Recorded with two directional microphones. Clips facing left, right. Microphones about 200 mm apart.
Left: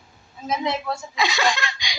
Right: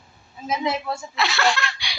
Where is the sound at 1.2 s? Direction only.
15° left (ahead or behind).